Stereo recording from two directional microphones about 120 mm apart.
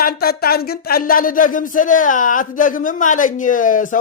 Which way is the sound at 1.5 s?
90° left.